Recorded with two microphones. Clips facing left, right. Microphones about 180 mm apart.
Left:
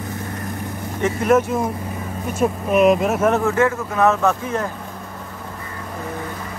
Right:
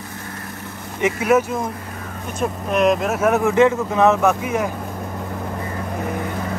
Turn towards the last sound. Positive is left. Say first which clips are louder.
# right 2 dB
turn(degrees=-10)  # may be behind; listen again after turning